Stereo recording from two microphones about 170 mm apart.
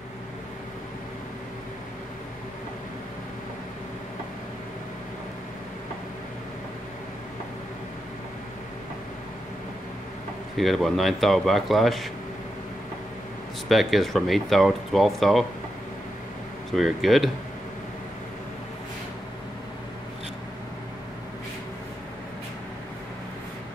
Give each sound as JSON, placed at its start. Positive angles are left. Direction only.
{"t": 10.5, "sound": "speech", "side_deg": 0}
{"t": 13.7, "sound": "speech", "side_deg": 0}
{"t": 16.7, "sound": "speech", "side_deg": 0}